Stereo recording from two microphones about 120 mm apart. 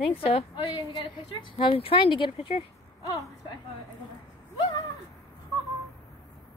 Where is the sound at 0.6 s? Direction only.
40° left (ahead or behind).